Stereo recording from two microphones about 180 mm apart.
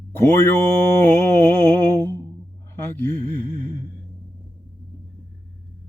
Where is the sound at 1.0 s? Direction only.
15° left (ahead or behind).